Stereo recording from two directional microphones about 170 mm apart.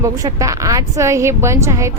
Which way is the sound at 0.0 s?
20° right (ahead or behind).